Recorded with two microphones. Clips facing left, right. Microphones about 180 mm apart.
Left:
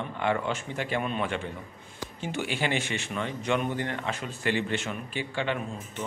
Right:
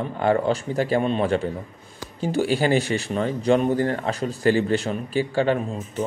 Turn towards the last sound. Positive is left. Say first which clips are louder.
# right 8 dB
turn(degrees=-40)  # may be behind; listen again after turning